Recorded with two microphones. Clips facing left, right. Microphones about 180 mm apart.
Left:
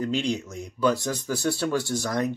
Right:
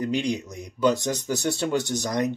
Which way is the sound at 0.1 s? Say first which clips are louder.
Right 1 dB; 15° right (ahead or behind).